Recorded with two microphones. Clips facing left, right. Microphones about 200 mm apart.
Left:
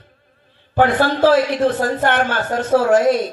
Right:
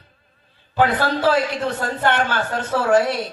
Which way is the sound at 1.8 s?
45° left (ahead or behind).